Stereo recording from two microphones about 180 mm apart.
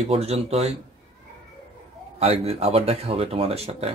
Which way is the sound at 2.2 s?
35° right (ahead or behind).